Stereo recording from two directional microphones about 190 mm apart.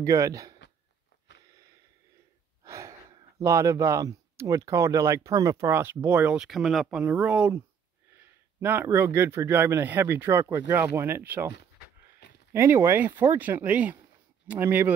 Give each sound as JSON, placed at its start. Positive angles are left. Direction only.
{"t": 0.0, "sound": "speech", "side_deg": -15}
{"t": 2.6, "sound": "speech", "side_deg": -15}
{"t": 12.2, "sound": "a sound", "side_deg": 60}
{"t": 12.5, "sound": "speech", "side_deg": -15}